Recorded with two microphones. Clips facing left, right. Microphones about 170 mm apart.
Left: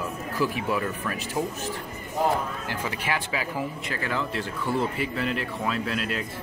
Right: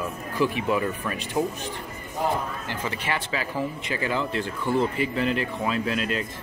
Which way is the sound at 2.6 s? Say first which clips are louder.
Even; 10° left (ahead or behind).